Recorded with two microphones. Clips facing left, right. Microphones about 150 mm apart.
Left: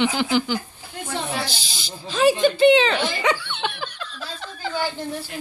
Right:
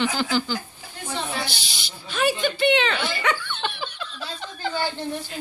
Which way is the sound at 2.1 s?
35° left (ahead or behind).